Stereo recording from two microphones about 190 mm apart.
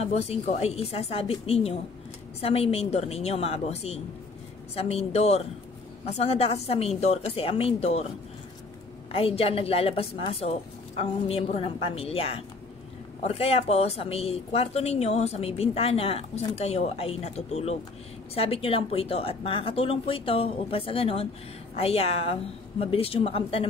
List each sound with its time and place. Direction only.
0.0 s speech: 35° left (ahead or behind)
9.1 s speech: 30° left (ahead or behind)